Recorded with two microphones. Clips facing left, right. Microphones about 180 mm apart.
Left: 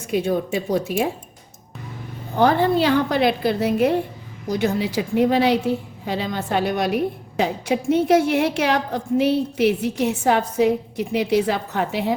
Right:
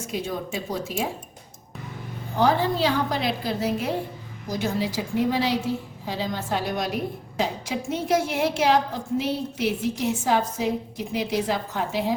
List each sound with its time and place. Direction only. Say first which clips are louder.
0.1 s a woman's voice: left 9 dB; 60° left (ahead or behind)
2.4 s a woman's voice: left 4 dB; 60° left (ahead or behind)